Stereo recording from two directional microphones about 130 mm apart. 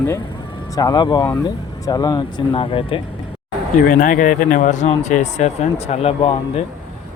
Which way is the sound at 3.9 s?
90° left.